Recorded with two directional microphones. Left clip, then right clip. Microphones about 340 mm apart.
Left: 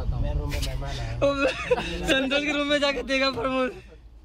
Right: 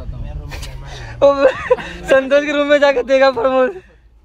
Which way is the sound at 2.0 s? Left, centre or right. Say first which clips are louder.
Right 15 dB; centre.